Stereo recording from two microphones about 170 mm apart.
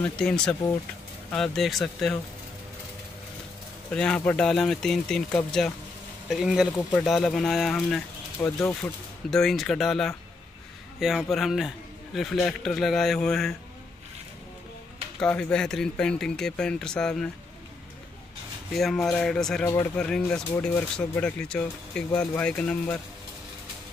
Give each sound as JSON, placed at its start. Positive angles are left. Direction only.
{"t": 0.0, "sound": "a man's voice", "side_deg": 5}
{"t": 3.9, "sound": "a man's voice", "side_deg": 5}
{"t": 15.1, "sound": "a man's voice", "side_deg": 5}
{"t": 18.7, "sound": "a man's voice", "side_deg": 0}